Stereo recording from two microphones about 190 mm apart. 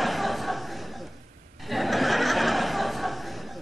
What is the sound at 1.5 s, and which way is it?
Chuckle, centre (ahead or behind).